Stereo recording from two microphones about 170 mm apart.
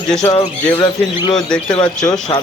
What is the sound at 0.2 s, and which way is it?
Speech, 25° left (ahead or behind).